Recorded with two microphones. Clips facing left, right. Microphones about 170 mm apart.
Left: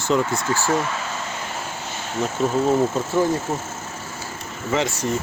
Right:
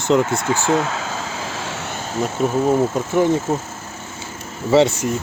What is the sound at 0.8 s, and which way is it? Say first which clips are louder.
Vehicle: right 3 dB; 90° right.